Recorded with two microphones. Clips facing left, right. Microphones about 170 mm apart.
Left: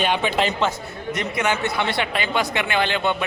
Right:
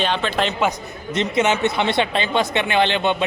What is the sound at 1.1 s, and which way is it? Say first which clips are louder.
Speech: right 5 dB; 25° right (ahead or behind).